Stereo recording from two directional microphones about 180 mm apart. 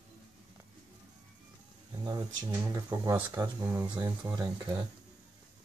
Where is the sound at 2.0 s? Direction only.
20° right (ahead or behind).